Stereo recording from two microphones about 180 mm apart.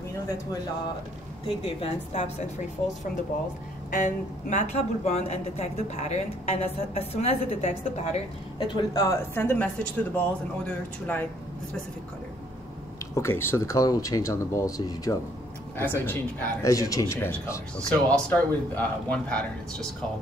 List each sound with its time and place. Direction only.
1.5 s a woman's voice: 30° left (ahead or behind)
3.9 s a woman's voice: 45° left (ahead or behind)
8.7 s speech: 20° left (ahead or behind)
13.1 s speech: 15° left (ahead or behind)